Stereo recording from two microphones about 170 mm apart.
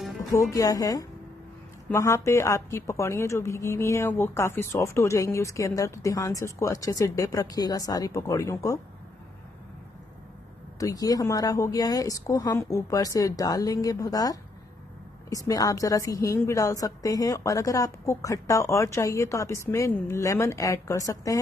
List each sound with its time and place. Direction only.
0.3 s a woman's voice: 20° left (ahead or behind)
10.8 s a woman's voice: 20° left (ahead or behind)